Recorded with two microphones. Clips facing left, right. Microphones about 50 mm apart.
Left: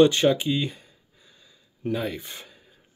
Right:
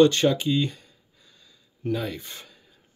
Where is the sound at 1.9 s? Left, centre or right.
Centre.